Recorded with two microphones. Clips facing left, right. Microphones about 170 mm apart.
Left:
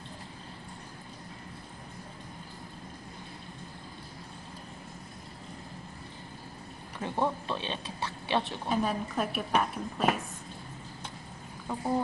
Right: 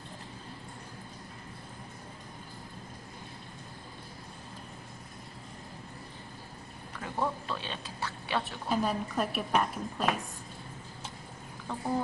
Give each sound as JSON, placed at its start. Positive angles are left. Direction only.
{"t": 7.0, "sound": "speech", "side_deg": 25}
{"t": 8.6, "sound": "a woman's voice", "side_deg": 0}
{"t": 11.7, "sound": "chicken", "side_deg": 10}